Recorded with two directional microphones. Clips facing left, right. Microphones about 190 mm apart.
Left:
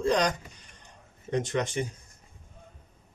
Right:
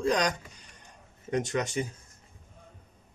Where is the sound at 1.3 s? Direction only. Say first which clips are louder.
Left 1 dB; 10° right (ahead or behind).